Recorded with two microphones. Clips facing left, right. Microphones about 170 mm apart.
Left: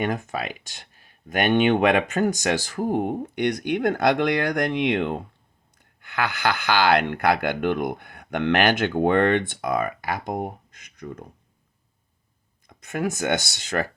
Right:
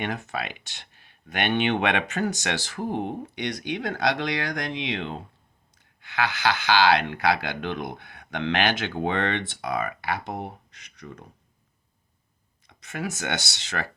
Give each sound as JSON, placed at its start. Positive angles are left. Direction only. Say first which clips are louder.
{"t": 0.0, "sound": "speech", "louder": "left 4 dB", "side_deg": 45}
{"t": 12.6, "sound": "speech", "louder": "left 6 dB", "side_deg": 50}